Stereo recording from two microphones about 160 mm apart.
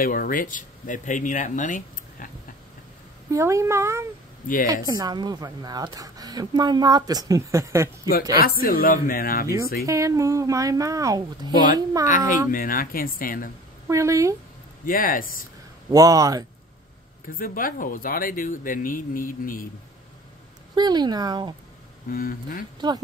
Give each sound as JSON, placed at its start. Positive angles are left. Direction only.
{"t": 0.0, "sound": "speech", "side_deg": 65}
{"t": 3.3, "sound": "a woman's voice", "side_deg": -20}
{"t": 8.4, "sound": "speech", "side_deg": 65}
{"t": 9.8, "sound": "a woman's voice", "side_deg": -20}
{"t": 12.4, "sound": "speech", "side_deg": 60}
{"t": 13.8, "sound": "a woman's voice", "side_deg": -20}
{"t": 14.9, "sound": "speech", "side_deg": 60}
{"t": 15.9, "sound": "a woman's voice", "side_deg": -20}
{"t": 17.4, "sound": "speech", "side_deg": 60}
{"t": 20.7, "sound": "a woman's voice", "side_deg": -25}
{"t": 22.1, "sound": "speech", "side_deg": 60}
{"t": 22.8, "sound": "a woman's voice", "side_deg": -25}